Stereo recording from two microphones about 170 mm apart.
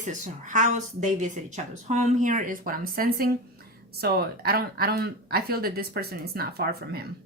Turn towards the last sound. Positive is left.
turn(degrees=-65)  # may be behind; listen again after turning